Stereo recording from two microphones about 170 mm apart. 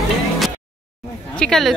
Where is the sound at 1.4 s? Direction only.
Centre (ahead or behind).